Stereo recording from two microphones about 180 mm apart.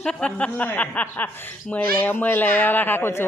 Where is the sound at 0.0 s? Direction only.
5° left (ahead or behind).